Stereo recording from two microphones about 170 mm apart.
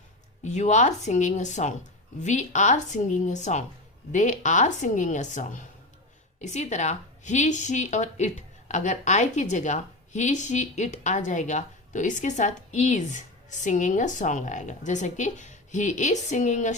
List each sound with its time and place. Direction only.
0.4 s speech: 45° left (ahead or behind)